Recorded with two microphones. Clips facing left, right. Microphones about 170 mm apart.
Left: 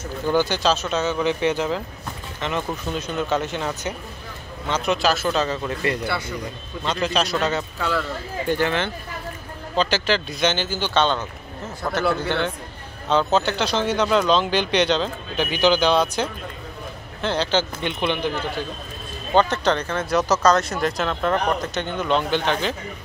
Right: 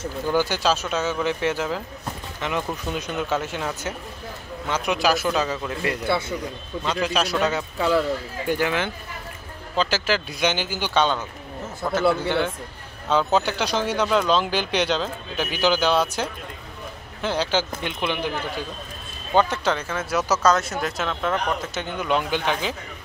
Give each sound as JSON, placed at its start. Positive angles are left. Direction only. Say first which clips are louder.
{"t": 0.3, "sound": "speech", "louder": "left 2 dB", "side_deg": -10}
{"t": 6.0, "sound": "speech", "louder": "right 3 dB", "side_deg": -25}
{"t": 6.8, "sound": "speech", "louder": "left 1 dB", "side_deg": -5}
{"t": 19.3, "sound": "speech", "louder": "left 2 dB", "side_deg": -10}